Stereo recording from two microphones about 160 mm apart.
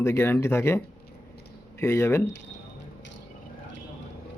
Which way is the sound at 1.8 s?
20° left (ahead or behind).